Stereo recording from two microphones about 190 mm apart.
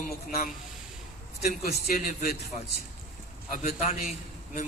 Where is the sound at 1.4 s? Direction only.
55° left (ahead or behind).